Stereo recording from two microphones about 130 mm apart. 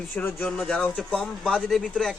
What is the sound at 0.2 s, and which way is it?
Speech, 20° left (ahead or behind).